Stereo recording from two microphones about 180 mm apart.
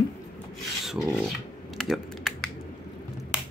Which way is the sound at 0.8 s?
Centre (ahead or behind).